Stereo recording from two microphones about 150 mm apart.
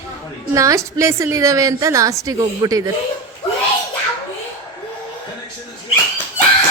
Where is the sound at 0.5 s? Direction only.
20° right (ahead or behind).